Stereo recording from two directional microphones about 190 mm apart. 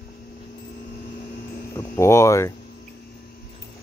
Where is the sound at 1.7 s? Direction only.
15° left (ahead or behind).